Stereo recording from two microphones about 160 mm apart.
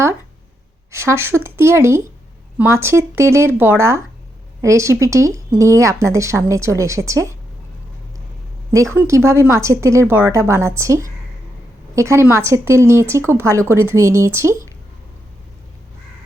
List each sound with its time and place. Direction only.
0.9 s a woman's voice: 15° right (ahead or behind)
8.7 s speech: 15° right (ahead or behind)